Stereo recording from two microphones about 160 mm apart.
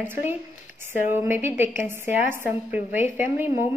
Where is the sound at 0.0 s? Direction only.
15° right (ahead or behind).